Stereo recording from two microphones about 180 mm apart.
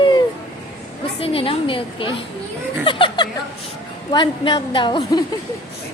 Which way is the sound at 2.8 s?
25° left (ahead or behind).